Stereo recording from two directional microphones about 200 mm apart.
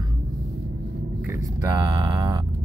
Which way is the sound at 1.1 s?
10° right (ahead or behind).